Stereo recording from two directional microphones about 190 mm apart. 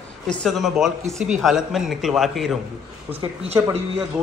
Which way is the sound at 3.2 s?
25° right (ahead or behind).